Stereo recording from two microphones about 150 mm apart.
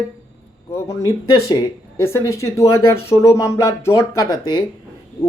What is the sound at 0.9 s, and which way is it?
Speech, 20° left (ahead or behind).